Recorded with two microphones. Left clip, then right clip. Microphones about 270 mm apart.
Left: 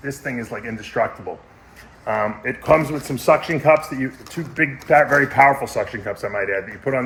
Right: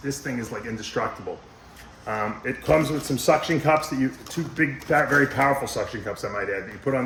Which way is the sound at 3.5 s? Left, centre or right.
Left.